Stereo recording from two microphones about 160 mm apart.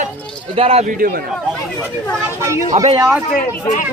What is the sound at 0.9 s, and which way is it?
Speech, 65° right (ahead or behind).